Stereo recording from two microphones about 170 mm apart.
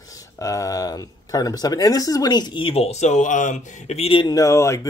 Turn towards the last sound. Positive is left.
turn(degrees=15)  # may be behind; listen again after turning